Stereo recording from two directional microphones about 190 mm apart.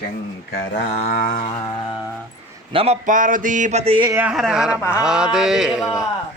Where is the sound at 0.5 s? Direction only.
55° left (ahead or behind).